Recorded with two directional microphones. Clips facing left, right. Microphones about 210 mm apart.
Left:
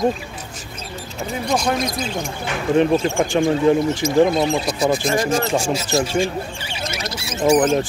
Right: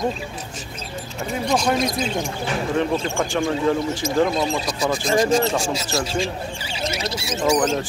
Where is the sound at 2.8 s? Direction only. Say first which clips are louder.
Left 7 dB; 25° left (ahead or behind).